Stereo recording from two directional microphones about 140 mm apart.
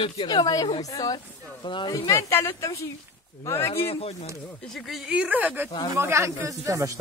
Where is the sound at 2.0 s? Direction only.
20° left (ahead or behind).